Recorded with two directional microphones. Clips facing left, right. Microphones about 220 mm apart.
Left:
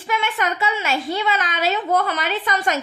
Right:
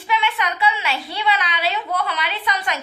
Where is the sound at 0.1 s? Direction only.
45° left (ahead or behind).